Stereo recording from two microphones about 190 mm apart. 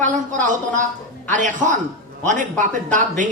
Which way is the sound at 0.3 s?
40° right (ahead or behind).